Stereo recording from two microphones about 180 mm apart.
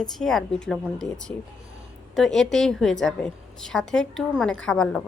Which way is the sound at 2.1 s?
Centre (ahead or behind).